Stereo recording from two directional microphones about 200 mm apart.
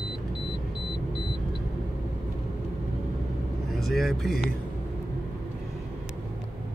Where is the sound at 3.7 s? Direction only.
Centre (ahead or behind).